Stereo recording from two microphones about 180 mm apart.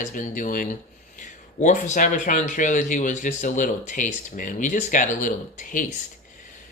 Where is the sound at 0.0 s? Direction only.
45° left (ahead or behind).